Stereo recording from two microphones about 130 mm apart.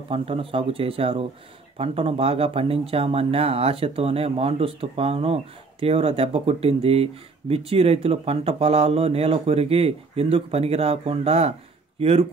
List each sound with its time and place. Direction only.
0.1 s speech: 45° right (ahead or behind)